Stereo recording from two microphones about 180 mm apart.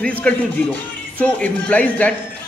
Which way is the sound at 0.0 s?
5° left (ahead or behind).